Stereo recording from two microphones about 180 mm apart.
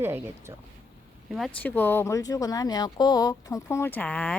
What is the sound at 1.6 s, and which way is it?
Speech, 10° left (ahead or behind).